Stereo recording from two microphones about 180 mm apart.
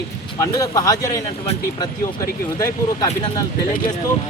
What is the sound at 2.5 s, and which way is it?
Speech, 20° left (ahead or behind).